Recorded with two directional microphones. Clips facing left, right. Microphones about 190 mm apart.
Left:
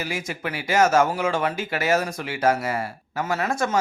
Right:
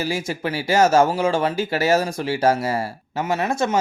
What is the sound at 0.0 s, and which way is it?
Speech, 30° right (ahead or behind).